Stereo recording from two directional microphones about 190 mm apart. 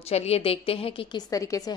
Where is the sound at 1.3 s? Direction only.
15° left (ahead or behind).